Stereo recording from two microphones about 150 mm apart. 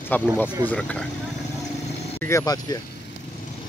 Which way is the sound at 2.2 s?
20° left (ahead or behind).